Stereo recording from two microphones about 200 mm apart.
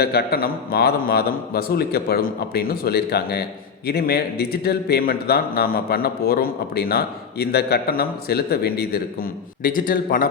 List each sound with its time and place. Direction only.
0.0 s a man's voice: 55° left (ahead or behind)